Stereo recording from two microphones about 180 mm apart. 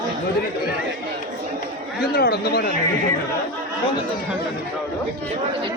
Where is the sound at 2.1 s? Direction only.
60° left (ahead or behind).